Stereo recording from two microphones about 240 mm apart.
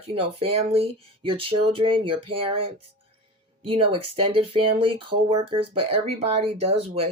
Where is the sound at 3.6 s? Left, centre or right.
Right.